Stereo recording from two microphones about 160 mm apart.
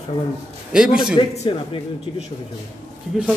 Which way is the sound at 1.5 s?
35° left (ahead or behind).